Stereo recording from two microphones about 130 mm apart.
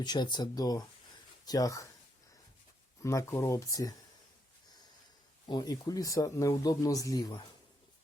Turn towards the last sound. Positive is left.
turn(degrees=30)  # may be behind; listen again after turning